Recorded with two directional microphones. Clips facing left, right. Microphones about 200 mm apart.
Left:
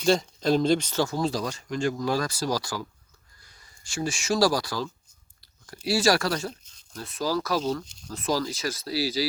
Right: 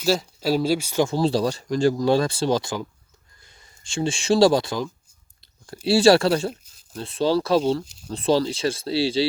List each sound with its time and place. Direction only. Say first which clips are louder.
0.0 s speech: even; 5° right (ahead or behind)
1.0 s speech: right 6 dB; 30° right (ahead or behind)